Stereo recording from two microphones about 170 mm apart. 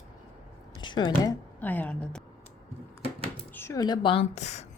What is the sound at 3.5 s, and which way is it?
A woman's voice, 20° left (ahead or behind).